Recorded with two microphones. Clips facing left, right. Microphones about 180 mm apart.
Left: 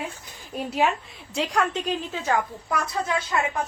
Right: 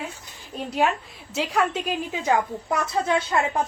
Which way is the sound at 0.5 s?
Centre (ahead or behind).